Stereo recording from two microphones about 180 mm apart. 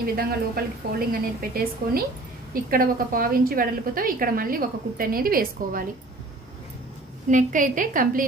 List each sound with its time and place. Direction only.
0.0 s a woman's voice: 55° right (ahead or behind)
7.2 s a woman's voice: 45° right (ahead or behind)